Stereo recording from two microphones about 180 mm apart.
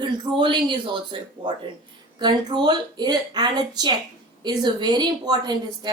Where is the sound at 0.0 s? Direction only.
25° right (ahead or behind).